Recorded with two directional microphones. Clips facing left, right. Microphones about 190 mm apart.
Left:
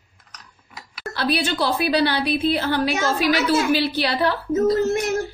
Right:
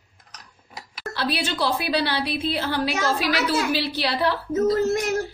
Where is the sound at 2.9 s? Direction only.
20° left (ahead or behind).